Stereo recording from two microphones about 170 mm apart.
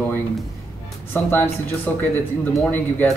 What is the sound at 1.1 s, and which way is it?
Speech, 10° left (ahead or behind).